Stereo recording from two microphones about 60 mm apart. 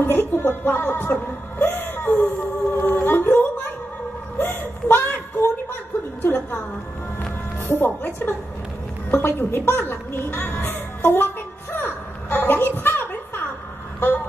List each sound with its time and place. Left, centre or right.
0.0 s speech: left
1.6 s humming: left
4.4 s a sound: left
7.6 s speech: left
9.1 s music: left
13.9 s a sound: left